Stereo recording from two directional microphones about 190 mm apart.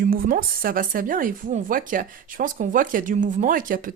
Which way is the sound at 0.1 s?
50° right (ahead or behind).